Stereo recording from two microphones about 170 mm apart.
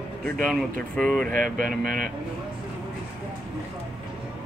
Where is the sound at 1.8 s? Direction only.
55° right (ahead or behind).